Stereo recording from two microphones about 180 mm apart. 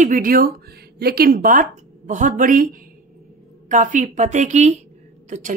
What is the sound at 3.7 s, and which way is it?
A woman's voice, 45° right (ahead or behind).